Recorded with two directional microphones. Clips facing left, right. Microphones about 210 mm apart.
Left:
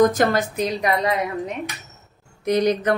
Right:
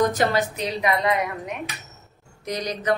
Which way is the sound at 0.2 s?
45° left (ahead or behind).